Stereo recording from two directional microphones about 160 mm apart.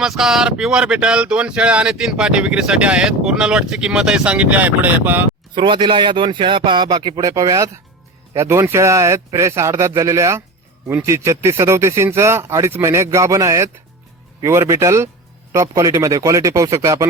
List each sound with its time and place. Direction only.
0.0 s speech: 5° right (ahead or behind)
5.5 s speech: 30° right (ahead or behind)